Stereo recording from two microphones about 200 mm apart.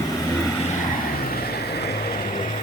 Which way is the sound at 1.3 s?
50° left (ahead or behind).